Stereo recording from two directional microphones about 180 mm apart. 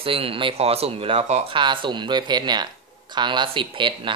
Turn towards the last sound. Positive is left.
turn(degrees=-25)  # may be behind; listen again after turning